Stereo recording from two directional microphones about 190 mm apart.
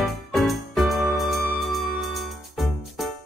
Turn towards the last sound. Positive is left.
turn(degrees=0)  # may be behind; listen again after turning